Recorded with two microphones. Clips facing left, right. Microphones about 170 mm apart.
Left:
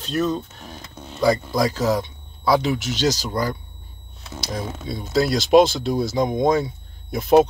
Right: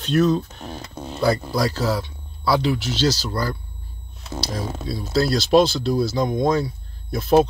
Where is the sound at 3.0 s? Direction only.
20° left (ahead or behind).